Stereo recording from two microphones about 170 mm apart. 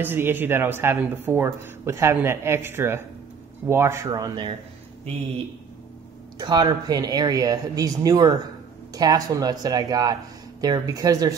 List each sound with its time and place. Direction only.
0.0 s speech: 10° right (ahead or behind)
6.3 s speech: 25° right (ahead or behind)